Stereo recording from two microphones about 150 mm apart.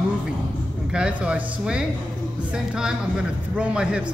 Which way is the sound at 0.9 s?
5° right (ahead or behind).